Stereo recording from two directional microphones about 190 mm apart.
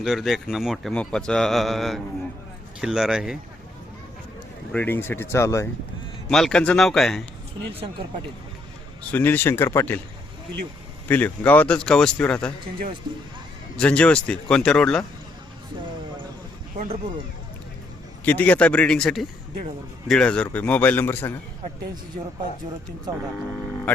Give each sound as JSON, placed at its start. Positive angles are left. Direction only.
{"t": 0.0, "sound": "speech", "side_deg": 0}
{"t": 4.7, "sound": "a man's voice", "side_deg": 10}
{"t": 6.3, "sound": "speech", "side_deg": 5}
{"t": 9.1, "sound": "a man's voice", "side_deg": 10}
{"t": 11.1, "sound": "speech", "side_deg": 10}
{"t": 13.7, "sound": "speech", "side_deg": 5}
{"t": 16.7, "sound": "speech", "side_deg": -40}
{"t": 18.3, "sound": "a man's voice", "side_deg": 10}